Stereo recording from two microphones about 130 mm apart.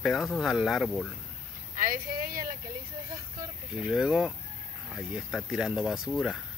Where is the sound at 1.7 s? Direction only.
90° right.